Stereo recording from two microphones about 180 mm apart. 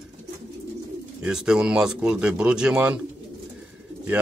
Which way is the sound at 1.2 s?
5° right (ahead or behind).